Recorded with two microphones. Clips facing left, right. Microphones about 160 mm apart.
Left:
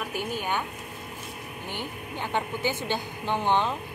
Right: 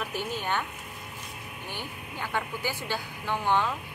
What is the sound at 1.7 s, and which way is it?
A woman's voice, 20° left (ahead or behind).